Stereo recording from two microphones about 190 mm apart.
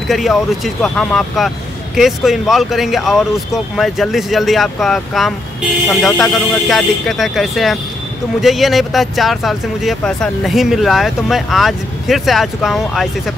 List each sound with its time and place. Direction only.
0.1 s speech: centre (ahead or behind)